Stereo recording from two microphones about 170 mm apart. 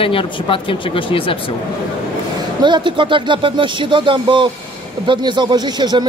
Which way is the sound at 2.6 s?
25° right (ahead or behind).